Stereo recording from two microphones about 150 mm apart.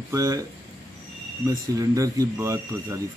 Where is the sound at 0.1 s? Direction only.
20° right (ahead or behind).